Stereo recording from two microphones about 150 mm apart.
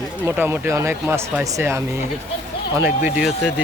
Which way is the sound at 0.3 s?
15° right (ahead or behind).